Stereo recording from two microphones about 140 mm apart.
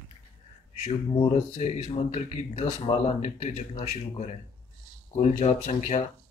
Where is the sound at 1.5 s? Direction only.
50° left (ahead or behind).